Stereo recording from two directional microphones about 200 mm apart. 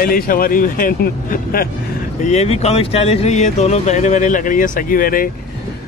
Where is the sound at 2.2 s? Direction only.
30° left (ahead or behind).